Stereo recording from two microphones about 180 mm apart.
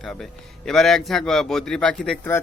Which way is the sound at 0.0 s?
Centre (ahead or behind).